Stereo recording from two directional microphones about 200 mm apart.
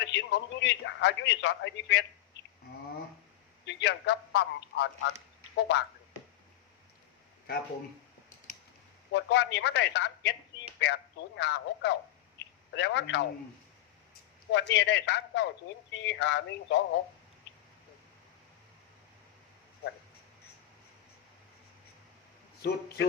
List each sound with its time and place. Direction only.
0.0 s a man's voice: 60° left (ahead or behind)
3.7 s a man's voice: 60° left (ahead or behind)
9.1 s a man's voice: 60° left (ahead or behind)
14.5 s a man's voice: 60° left (ahead or behind)
22.6 s a man's voice: 55° left (ahead or behind)